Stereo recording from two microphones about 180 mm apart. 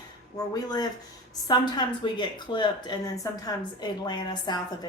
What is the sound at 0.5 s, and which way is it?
A woman's voice, 20° left (ahead or behind).